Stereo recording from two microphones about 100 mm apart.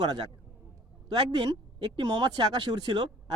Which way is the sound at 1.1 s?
45° right (ahead or behind).